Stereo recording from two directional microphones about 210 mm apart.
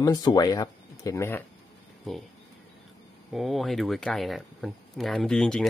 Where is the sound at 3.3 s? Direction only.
Centre (ahead or behind).